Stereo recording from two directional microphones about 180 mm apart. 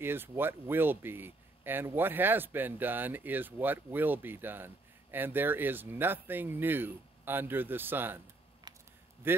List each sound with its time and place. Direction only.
0.0 s speech: 10° right (ahead or behind)
8.7 s a sound: 25° right (ahead or behind)
9.3 s speech: 10° right (ahead or behind)